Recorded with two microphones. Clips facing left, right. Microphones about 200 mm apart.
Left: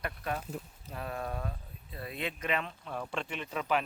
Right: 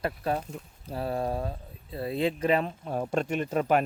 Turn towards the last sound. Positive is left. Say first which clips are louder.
# right 8 dB
turn(degrees=-45)  # may be behind; listen again after turning